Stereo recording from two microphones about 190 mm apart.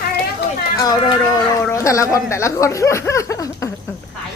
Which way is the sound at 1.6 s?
15° left (ahead or behind).